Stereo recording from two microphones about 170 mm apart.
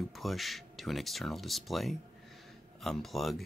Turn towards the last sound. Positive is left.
turn(degrees=0)  # may be behind; listen again after turning